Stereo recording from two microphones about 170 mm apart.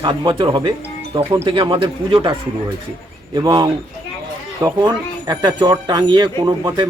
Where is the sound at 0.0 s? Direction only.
30° right (ahead or behind).